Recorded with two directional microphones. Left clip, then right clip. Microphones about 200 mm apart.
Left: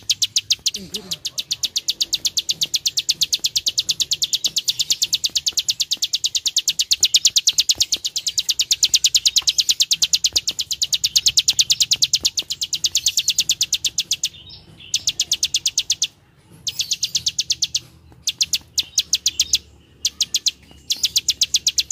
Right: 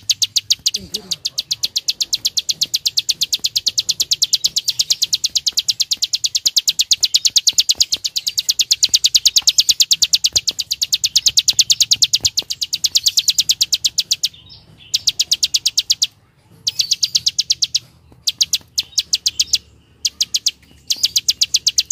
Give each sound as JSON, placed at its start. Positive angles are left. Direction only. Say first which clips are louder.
{"t": 0.0, "sound": "chirp", "louder": "right 3 dB", "side_deg": -10}
{"t": 0.9, "sound": "bird vocalization", "louder": "right 4 dB", "side_deg": -15}
{"t": 7.0, "sound": "bird", "louder": "right 1 dB", "side_deg": 0}
{"t": 18.8, "sound": "chirp", "louder": "right 1 dB", "side_deg": -5}